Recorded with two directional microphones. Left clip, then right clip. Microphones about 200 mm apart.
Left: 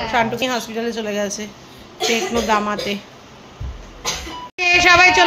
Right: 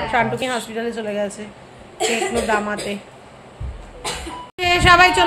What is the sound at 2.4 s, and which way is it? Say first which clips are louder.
Speech: left 2 dB; 15° left (ahead or behind).